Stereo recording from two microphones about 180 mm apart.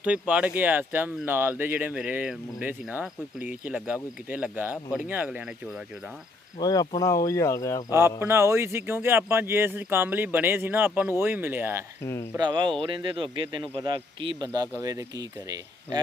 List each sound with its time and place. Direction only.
0.0 s speech: 5° right (ahead or behind)
6.6 s speech: 20° left (ahead or behind)
8.2 s speech: 15° right (ahead or behind)
12.0 s speech: 15° left (ahead or behind)
12.4 s speech: 25° right (ahead or behind)